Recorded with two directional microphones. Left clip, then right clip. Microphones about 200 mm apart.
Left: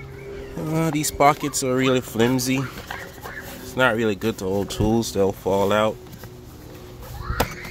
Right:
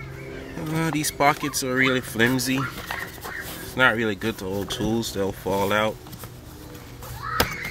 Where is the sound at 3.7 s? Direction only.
10° left (ahead or behind).